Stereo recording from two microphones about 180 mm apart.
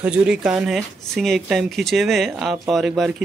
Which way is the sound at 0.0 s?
5° right (ahead or behind).